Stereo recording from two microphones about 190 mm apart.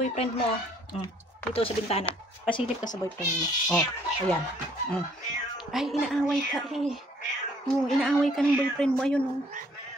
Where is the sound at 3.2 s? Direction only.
5° right (ahead or behind).